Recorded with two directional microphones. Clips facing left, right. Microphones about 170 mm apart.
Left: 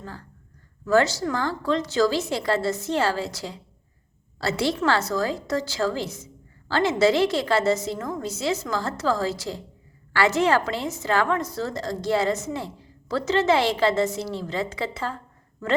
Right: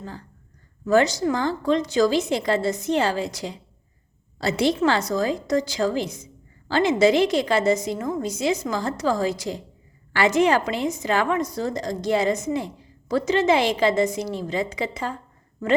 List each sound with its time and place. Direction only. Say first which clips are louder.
0.0 s a woman's voice: right 2 dB; 20° right (ahead or behind)